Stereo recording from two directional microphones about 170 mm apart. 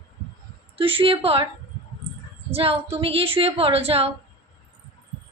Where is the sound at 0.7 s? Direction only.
30° right (ahead or behind).